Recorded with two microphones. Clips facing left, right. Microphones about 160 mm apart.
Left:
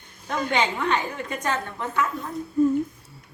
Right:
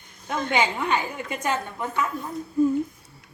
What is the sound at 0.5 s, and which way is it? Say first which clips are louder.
A woman's voice: even; 10° right (ahead or behind).